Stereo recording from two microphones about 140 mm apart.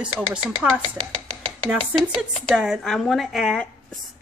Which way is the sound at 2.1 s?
Centre (ahead or behind).